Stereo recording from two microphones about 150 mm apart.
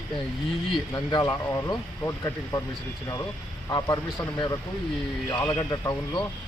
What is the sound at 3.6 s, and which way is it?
A man's voice, 25° left (ahead or behind).